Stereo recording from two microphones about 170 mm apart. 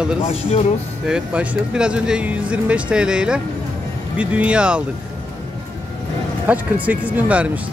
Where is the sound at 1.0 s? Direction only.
5° right (ahead or behind).